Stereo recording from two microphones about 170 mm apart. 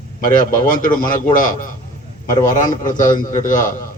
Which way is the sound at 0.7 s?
50° left (ahead or behind).